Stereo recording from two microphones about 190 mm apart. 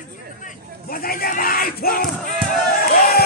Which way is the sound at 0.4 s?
45° left (ahead or behind).